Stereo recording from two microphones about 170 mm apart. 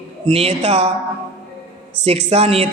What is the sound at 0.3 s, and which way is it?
Speech, 35° right (ahead or behind).